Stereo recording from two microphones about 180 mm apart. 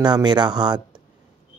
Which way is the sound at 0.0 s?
25° right (ahead or behind).